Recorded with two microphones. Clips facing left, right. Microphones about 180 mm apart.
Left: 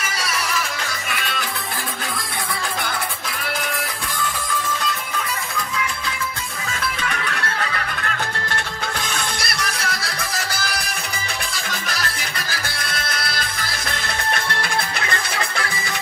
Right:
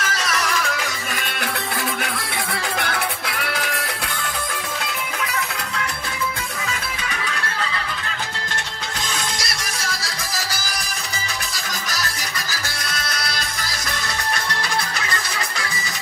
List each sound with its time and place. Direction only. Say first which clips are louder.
0.0 s music: right 2 dB; 10° left (ahead or behind)
1.2 s music: even; 55° right (ahead or behind)
7.1 s music: left 2 dB; 60° left (ahead or behind)
9.1 s music: left 1 dB; 60° left (ahead or behind)
11.9 s music: left 1 dB; 55° left (ahead or behind)